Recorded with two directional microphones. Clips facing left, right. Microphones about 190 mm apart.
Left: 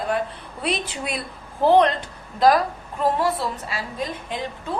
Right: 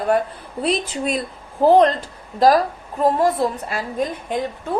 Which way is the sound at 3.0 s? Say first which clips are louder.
Right 5 dB; 45° right (ahead or behind).